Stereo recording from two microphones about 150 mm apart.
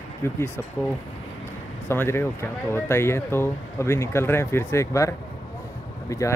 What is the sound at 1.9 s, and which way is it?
Speech, 15° left (ahead or behind).